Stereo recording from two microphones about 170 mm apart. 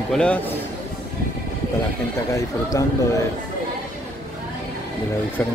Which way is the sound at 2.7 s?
20° left (ahead or behind).